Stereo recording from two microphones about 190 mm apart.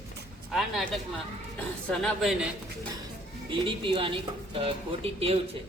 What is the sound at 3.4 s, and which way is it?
A woman's voice, 25° right (ahead or behind).